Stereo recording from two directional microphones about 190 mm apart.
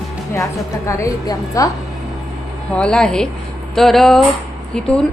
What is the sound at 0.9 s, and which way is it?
Speech, 15° left (ahead or behind).